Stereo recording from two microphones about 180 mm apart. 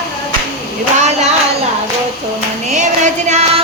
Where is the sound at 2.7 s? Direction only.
40° right (ahead or behind).